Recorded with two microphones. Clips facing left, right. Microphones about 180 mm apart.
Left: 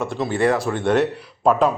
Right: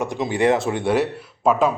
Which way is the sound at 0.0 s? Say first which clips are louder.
Even; 15° right (ahead or behind).